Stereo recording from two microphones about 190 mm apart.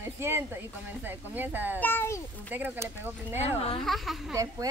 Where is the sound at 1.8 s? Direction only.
10° left (ahead or behind).